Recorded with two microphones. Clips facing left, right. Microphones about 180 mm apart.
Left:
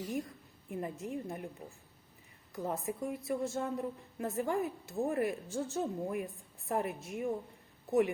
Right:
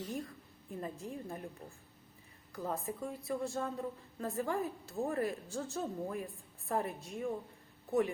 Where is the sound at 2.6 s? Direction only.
20° left (ahead or behind).